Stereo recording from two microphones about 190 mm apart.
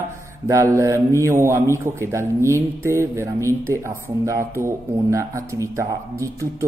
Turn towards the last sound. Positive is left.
turn(degrees=-15)  # may be behind; listen again after turning